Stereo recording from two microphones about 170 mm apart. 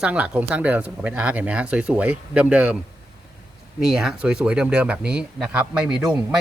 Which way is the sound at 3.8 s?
5° right (ahead or behind).